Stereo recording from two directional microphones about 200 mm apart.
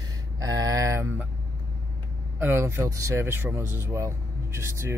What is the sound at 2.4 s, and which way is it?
Speech, 10° right (ahead or behind).